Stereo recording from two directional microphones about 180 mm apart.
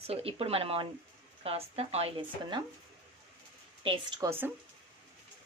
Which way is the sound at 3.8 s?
30° right (ahead or behind).